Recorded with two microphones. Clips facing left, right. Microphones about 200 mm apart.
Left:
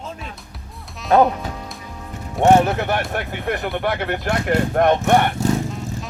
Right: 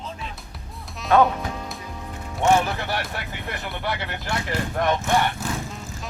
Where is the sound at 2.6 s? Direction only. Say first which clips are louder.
Left 7 dB; 55° left (ahead or behind).